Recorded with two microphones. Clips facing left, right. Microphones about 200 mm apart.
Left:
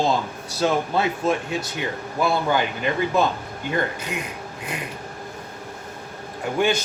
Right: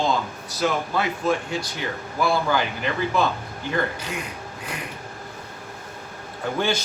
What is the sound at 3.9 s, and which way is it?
Speech, 20° left (ahead or behind).